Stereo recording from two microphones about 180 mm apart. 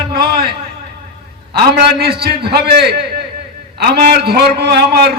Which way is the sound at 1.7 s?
65° right (ahead or behind).